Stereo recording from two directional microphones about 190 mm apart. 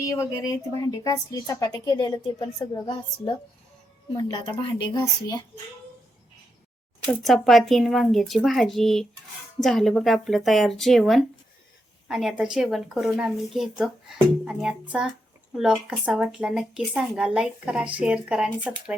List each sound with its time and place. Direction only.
0.0 s a woman's voice: 15° left (ahead or behind)
7.2 s a woman's voice: centre (ahead or behind)